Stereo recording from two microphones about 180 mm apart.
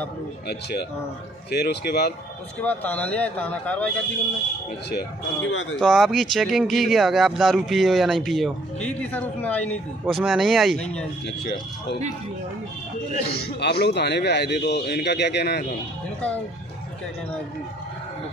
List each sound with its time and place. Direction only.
0.5 s speech: 65° left (ahead or behind)
2.6 s speech: 10° left (ahead or behind)
4.9 s speech: 90° left
5.8 s speech: centre (ahead or behind)
13.3 s a man's voice: 60° left (ahead or behind)